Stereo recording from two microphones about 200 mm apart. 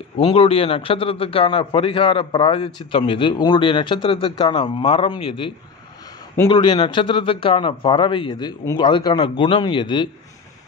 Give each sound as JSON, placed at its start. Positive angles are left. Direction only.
{"t": 0.2, "sound": "a man's voice", "side_deg": 30}